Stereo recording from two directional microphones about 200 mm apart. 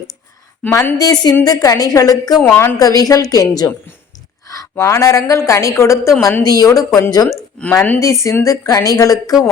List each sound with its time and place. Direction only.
0.6 s a woman's voice: 10° left (ahead or behind)